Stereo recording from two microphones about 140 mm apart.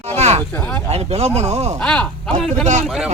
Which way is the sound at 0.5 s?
10° left (ahead or behind).